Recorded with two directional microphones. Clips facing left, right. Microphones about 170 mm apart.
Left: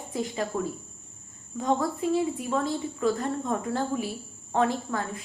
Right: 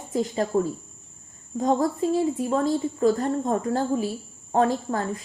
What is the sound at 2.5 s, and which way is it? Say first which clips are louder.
A woman's voice: right 5 dB; 40° right (ahead or behind).